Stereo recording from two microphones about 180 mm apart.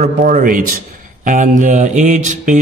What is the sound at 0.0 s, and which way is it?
A man's voice, 50° right (ahead or behind).